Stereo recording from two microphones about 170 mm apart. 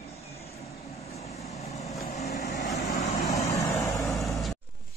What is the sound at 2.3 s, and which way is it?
Vehicle, 75° left (ahead or behind).